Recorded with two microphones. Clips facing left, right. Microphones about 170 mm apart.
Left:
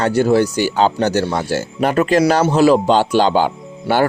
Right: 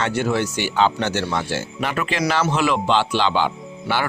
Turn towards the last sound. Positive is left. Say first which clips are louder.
# left 6 dB
turn(degrees=45)  # may be behind; listen again after turning